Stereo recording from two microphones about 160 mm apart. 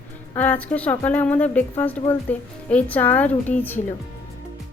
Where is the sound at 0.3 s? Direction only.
10° left (ahead or behind).